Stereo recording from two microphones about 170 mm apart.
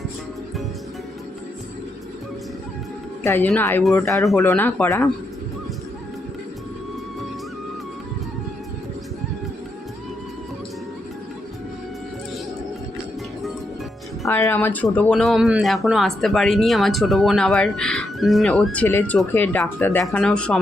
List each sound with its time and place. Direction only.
3.2 s speech: 10° left (ahead or behind)
14.3 s speech: 15° left (ahead or behind)